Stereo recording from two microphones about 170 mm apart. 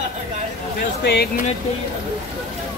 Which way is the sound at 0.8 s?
65° left (ahead or behind).